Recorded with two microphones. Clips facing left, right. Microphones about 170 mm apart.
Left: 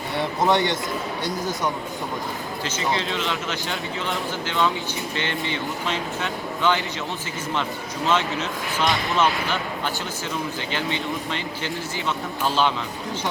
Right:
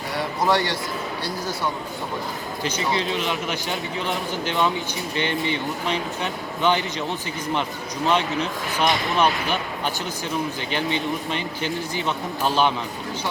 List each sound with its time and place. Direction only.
0.2 s a sound: 20° left (ahead or behind)
1.2 s speech: 20° left (ahead or behind)
2.6 s a man's voice: 15° right (ahead or behind)
8.0 s a man's voice: 15° right (ahead or behind)